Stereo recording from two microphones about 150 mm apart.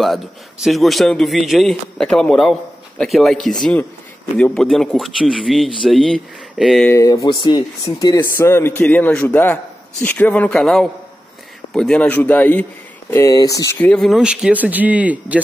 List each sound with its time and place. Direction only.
0.0 s speech: centre (ahead or behind)
6.9 s a man's voice: 20° left (ahead or behind)
13.7 s speech: 5° left (ahead or behind)